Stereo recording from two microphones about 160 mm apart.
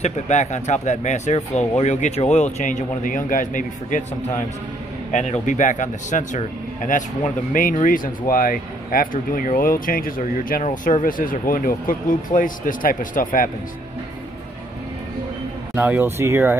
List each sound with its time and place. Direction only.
0.0 s speech: 45° left (ahead or behind)
5.1 s speech: 45° left (ahead or behind)
15.9 s speech: 15° right (ahead or behind)